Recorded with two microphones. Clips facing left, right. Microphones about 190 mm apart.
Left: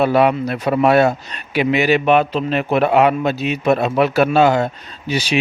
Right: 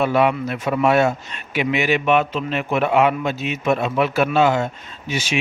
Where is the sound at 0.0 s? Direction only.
35° left (ahead or behind).